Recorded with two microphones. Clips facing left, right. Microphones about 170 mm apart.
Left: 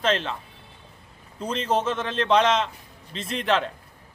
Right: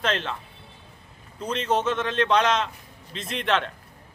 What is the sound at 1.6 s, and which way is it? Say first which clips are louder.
Speech: even; 30° left (ahead or behind).